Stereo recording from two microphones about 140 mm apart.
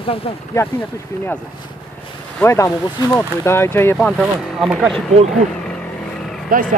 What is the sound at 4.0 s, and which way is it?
Speech, centre (ahead or behind).